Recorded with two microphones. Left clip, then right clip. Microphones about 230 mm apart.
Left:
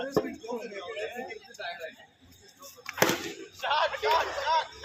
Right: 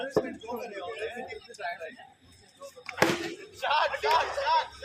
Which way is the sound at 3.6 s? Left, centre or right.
Right.